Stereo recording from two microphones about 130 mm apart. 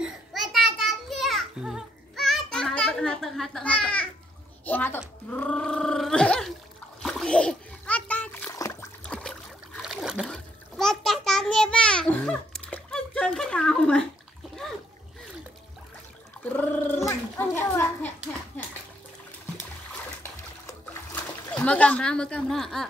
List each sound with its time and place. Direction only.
0.0 s music: 5° right (ahead or behind)
4.6 s speech: 15° left (ahead or behind)
7.0 s splash: 5° left (ahead or behind)
8.5 s splash: 25° left (ahead or behind)
9.0 s a sound: 5° left (ahead or behind)
9.8 s boat: 5° right (ahead or behind)
10.3 s bathtub: 5° left (ahead or behind)
16.5 s gargling: 15° left (ahead or behind)
21.5 s speech: 10° left (ahead or behind)